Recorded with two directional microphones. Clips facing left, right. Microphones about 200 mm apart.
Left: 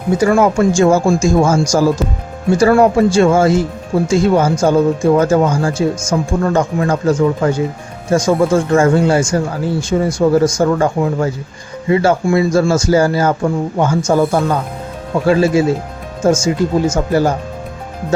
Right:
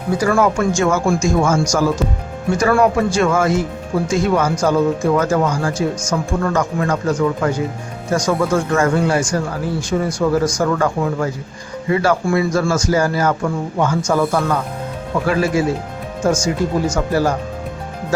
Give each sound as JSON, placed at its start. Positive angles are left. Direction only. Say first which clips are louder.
{"t": 0.2, "sound": "speech", "louder": "left 4 dB", "side_deg": 25}